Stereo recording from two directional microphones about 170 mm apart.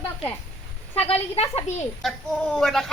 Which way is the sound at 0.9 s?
35° left (ahead or behind).